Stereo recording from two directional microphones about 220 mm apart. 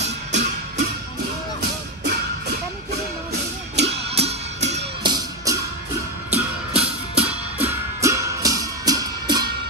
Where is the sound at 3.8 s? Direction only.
30° right (ahead or behind).